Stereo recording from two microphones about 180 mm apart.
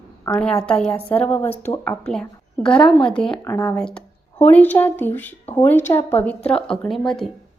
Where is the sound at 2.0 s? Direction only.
5° left (ahead or behind).